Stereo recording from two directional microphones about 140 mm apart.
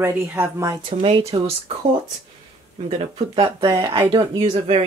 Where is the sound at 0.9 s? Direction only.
40° right (ahead or behind).